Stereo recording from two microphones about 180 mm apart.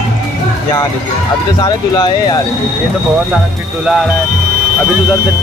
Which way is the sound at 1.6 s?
25° left (ahead or behind).